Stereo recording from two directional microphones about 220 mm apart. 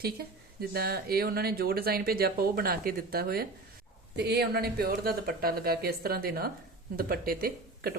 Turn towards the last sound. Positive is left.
turn(degrees=-45)  # may be behind; listen again after turning